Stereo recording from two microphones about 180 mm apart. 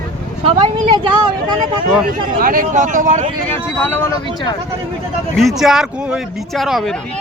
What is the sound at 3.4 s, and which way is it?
Speech, 10° left (ahead or behind).